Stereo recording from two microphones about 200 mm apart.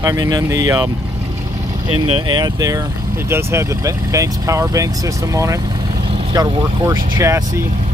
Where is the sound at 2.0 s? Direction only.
25° right (ahead or behind).